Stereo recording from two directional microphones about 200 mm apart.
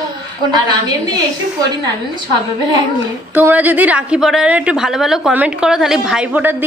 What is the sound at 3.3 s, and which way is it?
A woman's voice, 10° right (ahead or behind).